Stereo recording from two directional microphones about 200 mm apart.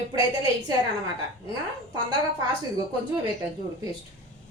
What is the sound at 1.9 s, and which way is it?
Speech, 20° right (ahead or behind).